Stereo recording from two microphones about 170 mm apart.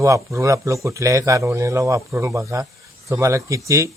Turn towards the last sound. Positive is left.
turn(degrees=-20)  # may be behind; listen again after turning